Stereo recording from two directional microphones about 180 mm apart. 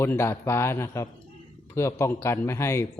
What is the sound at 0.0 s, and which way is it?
A man's voice, 15° left (ahead or behind).